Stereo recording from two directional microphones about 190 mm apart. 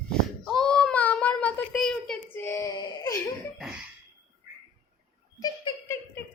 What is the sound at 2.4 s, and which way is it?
Wail, 15° left (ahead or behind).